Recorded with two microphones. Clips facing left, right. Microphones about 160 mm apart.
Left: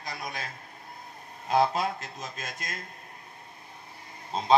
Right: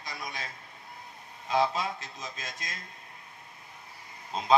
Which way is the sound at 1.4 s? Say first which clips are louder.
Left 3 dB; 45° left (ahead or behind).